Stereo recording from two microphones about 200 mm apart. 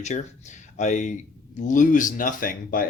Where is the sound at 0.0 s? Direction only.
35° left (ahead or behind).